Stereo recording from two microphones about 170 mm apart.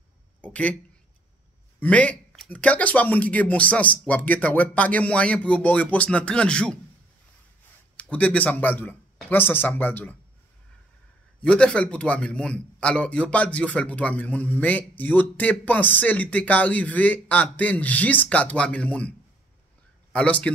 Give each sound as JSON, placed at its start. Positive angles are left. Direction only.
{"t": 0.4, "sound": "a sound", "side_deg": 10}
{"t": 1.8, "sound": "a man's voice", "side_deg": 10}
{"t": 8.0, "sound": "a man's voice", "side_deg": 10}
{"t": 11.4, "sound": "a man's voice", "side_deg": 5}